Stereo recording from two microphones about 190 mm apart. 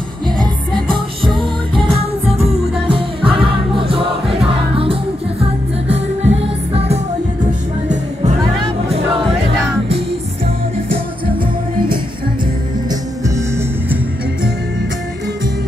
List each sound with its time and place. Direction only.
0.9 s music: 25° right (ahead or behind)